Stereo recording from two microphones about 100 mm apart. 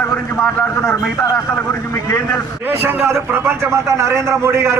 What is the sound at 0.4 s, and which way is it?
Speech, 10° right (ahead or behind).